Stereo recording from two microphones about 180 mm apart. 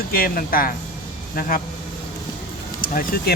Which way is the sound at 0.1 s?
55° left (ahead or behind).